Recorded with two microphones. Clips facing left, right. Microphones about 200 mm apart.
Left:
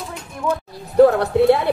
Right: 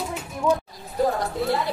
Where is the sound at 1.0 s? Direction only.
65° left (ahead or behind).